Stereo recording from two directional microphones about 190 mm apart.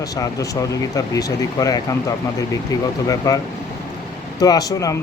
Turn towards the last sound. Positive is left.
turn(degrees=20)  # may be behind; listen again after turning